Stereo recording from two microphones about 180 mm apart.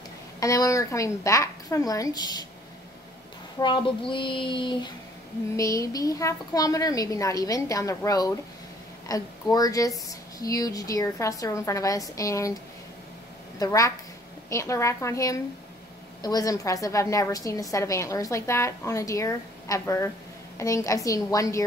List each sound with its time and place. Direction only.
0.4 s a woman's voice: 20° left (ahead or behind)
3.5 s speech: 25° left (ahead or behind)
13.6 s a woman's voice: 20° left (ahead or behind)